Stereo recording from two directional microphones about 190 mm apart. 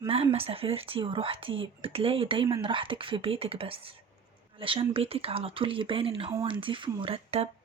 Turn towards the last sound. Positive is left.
turn(degrees=-30)  # may be behind; listen again after turning